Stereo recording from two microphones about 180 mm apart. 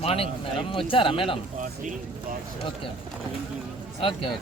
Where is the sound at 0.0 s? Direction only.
35° left (ahead or behind).